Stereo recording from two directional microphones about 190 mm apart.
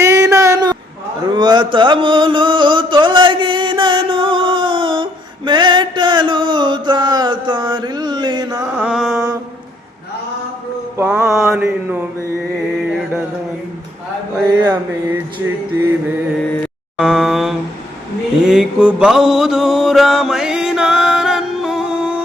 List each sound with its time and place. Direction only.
0.0 s a sound: 15° right (ahead or behind)
5.5 s mantra: 25° right (ahead or behind)
8.8 s mantra: 5° right (ahead or behind)
10.9 s mantra: 10° right (ahead or behind)
14.3 s mantra: 10° right (ahead or behind)
17.0 s a sound: 5° right (ahead or behind)
18.4 s mantra: 5° right (ahead or behind)